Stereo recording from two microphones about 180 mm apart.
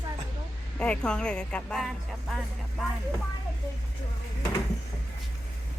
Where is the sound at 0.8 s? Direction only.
5° left (ahead or behind).